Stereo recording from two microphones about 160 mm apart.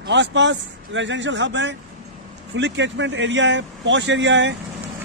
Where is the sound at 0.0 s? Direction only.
90° right.